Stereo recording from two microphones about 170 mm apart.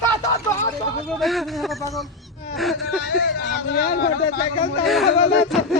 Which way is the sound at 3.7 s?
80° left.